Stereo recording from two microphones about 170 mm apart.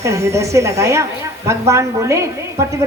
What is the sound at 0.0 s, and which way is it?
A woman's voice, 15° right (ahead or behind).